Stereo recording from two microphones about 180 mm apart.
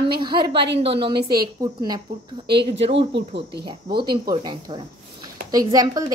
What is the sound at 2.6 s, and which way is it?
Speech, 30° right (ahead or behind).